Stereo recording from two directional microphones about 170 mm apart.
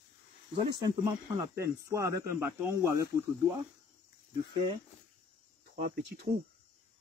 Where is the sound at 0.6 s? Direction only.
25° right (ahead or behind).